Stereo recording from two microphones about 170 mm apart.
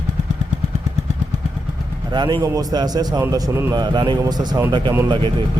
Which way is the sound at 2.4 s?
20° right (ahead or behind).